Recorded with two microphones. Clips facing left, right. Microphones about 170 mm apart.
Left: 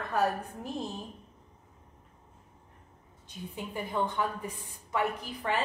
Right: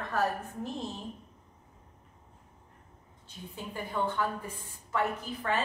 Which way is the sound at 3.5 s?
15° left (ahead or behind).